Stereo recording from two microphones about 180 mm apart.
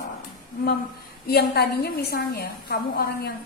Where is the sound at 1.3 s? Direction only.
65° left (ahead or behind).